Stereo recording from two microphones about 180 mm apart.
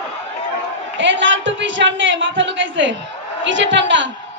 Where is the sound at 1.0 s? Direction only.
90° right.